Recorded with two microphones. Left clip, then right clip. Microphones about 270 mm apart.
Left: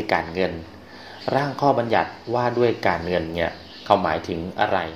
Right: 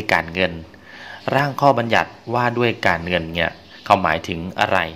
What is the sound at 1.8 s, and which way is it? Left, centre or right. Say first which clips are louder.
Speech: right 2 dB; right.